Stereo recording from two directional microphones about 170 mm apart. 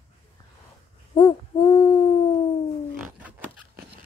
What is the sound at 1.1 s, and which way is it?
Hoot, 20° left (ahead or behind).